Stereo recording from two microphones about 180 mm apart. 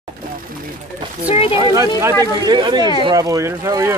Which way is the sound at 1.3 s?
30° left (ahead or behind).